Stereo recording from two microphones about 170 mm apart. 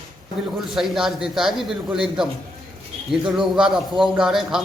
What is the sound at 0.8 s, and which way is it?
A man's voice, centre (ahead or behind).